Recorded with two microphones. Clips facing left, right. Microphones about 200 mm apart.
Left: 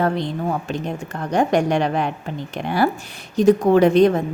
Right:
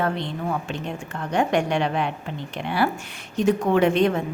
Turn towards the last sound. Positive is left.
turn(degrees=40)  # may be behind; listen again after turning